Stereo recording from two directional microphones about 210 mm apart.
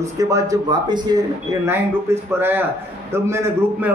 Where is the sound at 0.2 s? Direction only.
15° right (ahead or behind).